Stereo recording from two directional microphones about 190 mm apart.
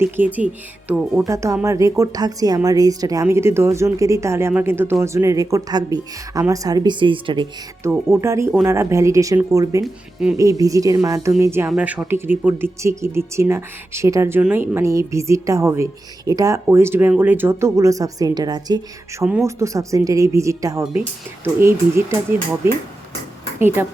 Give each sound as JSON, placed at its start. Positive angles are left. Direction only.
{"t": 0.0, "sound": "speech", "side_deg": -10}
{"t": 1.2, "sound": "a woman's voice", "side_deg": -15}
{"t": 7.9, "sound": "speech", "side_deg": -15}
{"t": 9.8, "sound": "speech", "side_deg": -5}
{"t": 10.3, "sound": "speech", "side_deg": -15}
{"t": 19.2, "sound": "speech", "side_deg": 0}
{"t": 19.5, "sound": "speech", "side_deg": -15}